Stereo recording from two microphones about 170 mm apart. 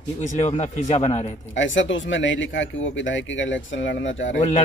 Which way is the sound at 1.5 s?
90° left.